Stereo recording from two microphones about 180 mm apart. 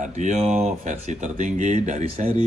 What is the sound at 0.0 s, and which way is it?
Speech, 40° right (ahead or behind).